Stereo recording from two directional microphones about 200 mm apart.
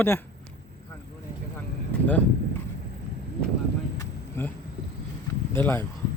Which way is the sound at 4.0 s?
10° left (ahead or behind).